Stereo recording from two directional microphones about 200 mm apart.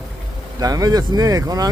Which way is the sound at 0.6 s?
20° right (ahead or behind).